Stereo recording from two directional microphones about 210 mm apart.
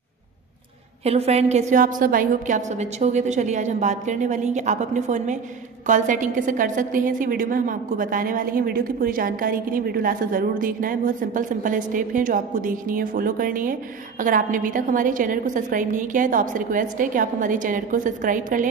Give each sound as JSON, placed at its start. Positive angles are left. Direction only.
{"t": 1.0, "sound": "a woman's voice", "side_deg": -30}